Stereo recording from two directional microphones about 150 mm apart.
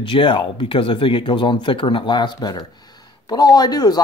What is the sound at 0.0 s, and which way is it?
Speech, 35° left (ahead or behind).